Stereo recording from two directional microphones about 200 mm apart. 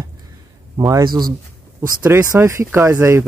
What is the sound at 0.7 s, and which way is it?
Speech, 20° right (ahead or behind).